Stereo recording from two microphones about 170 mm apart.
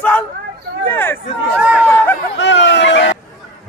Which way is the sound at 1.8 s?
10° left (ahead or behind).